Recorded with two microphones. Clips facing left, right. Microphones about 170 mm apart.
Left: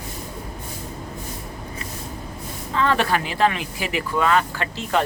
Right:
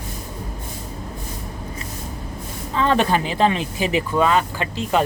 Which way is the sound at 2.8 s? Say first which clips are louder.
Right 2 dB; 20° right (ahead or behind).